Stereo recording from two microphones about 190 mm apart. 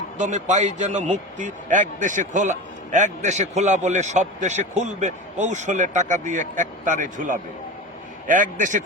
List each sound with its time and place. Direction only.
0.2 s a man's voice: 40° right (ahead or behind)